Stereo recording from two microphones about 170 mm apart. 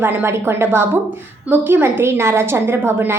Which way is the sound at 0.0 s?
15° right (ahead or behind).